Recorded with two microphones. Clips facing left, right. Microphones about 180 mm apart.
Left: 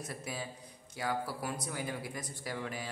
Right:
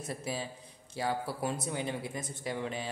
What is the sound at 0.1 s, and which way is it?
Speech, 30° right (ahead or behind).